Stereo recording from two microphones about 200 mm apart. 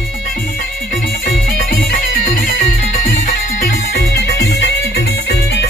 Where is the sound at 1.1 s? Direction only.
45° left (ahead or behind).